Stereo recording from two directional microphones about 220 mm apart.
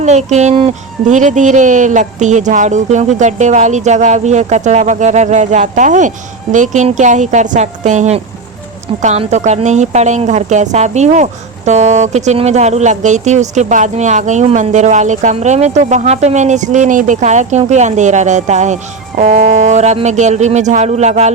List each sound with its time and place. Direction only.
0.0 s a woman's voice: 30° right (ahead or behind)